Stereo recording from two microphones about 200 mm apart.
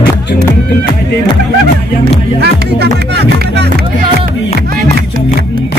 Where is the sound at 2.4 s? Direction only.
55° right (ahead or behind).